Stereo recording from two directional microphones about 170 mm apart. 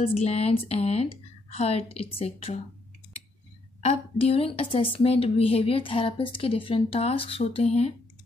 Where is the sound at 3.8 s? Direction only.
40° left (ahead or behind).